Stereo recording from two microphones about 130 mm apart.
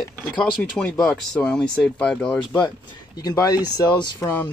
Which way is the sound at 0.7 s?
5° left (ahead or behind).